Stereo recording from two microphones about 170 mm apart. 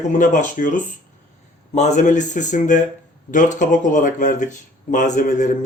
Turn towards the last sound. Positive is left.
turn(degrees=50)  # may be behind; listen again after turning